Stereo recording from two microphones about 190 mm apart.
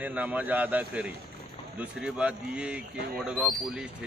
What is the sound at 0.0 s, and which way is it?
A man's voice, 10° right (ahead or behind).